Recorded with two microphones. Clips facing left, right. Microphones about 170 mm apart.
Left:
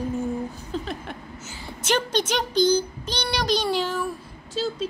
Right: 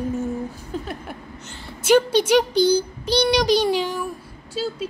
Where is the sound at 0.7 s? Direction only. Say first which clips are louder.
Even; 10° right (ahead or behind).